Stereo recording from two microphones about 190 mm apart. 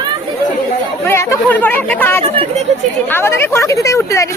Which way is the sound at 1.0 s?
15° left (ahead or behind).